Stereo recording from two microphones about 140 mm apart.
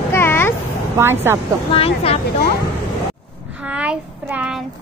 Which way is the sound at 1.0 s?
15° right (ahead or behind).